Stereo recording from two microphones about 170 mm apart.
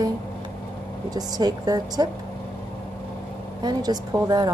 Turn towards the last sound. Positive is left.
turn(degrees=-25)  # may be behind; listen again after turning